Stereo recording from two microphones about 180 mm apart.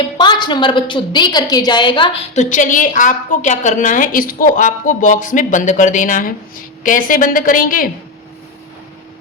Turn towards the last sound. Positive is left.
turn(degrees=50)  # may be behind; listen again after turning